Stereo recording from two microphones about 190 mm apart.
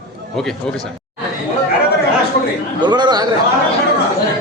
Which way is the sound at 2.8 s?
20° right (ahead or behind).